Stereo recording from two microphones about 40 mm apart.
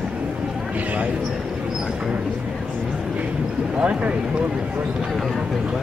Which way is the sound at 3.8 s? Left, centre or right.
Right.